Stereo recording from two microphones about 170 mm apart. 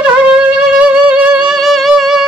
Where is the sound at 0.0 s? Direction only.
5° right (ahead or behind).